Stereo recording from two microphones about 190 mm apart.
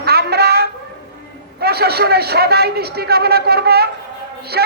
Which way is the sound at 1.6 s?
55° right (ahead or behind).